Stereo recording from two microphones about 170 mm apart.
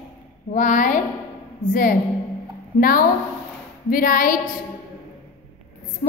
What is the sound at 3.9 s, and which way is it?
Speech, 55° left (ahead or behind).